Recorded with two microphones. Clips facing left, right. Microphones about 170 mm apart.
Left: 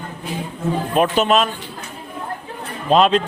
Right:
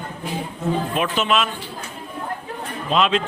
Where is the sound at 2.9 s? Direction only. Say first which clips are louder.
Left 5 dB; 40° left (ahead or behind).